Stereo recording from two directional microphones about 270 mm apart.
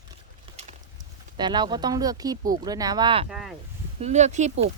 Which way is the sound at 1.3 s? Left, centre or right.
Centre.